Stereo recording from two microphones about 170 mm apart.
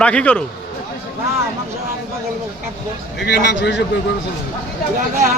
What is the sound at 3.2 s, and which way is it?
Speech, 80° left.